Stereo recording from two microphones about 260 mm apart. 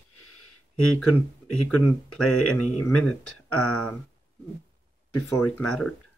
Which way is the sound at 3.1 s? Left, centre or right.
Left.